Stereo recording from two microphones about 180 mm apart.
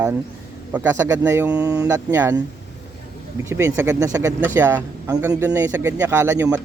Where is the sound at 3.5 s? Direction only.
15° right (ahead or behind).